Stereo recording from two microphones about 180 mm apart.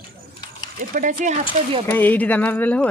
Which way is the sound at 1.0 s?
45° right (ahead or behind).